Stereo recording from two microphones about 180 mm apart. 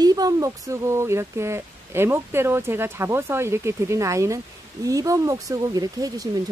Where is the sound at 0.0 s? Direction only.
20° right (ahead or behind).